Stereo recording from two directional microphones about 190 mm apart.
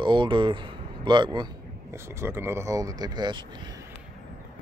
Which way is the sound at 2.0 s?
15° right (ahead or behind).